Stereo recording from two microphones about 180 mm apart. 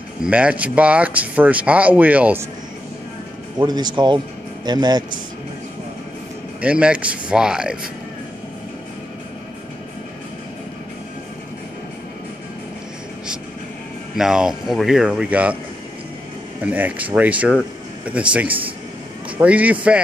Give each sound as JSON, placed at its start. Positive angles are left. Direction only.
{"t": 0.2, "sound": "speech", "side_deg": -5}
{"t": 3.5, "sound": "speech", "side_deg": -25}
{"t": 6.6, "sound": "speech", "side_deg": -5}
{"t": 14.1, "sound": "speech", "side_deg": -5}
{"t": 16.6, "sound": "speech", "side_deg": -10}